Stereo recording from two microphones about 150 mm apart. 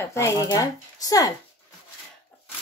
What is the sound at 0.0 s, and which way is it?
Speech, 20° left (ahead or behind).